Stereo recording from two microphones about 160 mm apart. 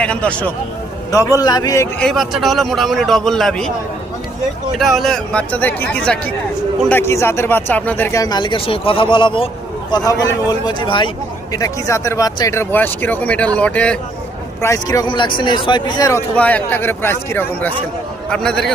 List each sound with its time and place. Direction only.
0.0 s speech: 5° left (ahead or behind)
1.4 s speech: 25° left (ahead or behind)
2.0 s a man's voice: centre (ahead or behind)
4.8 s speech: centre (ahead or behind)
8.2 s speech: 25° left (ahead or behind); by 14.0 s 5° left (ahead or behind)
14.6 s speech: 20° left (ahead or behind)
16.3 s a man's voice: 10° left (ahead or behind)